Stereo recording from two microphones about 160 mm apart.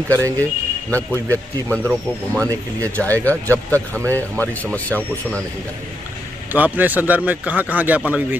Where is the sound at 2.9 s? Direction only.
10° left (ahead or behind).